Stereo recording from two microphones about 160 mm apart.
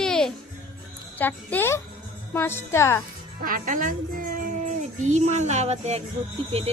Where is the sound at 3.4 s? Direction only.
60° right (ahead or behind).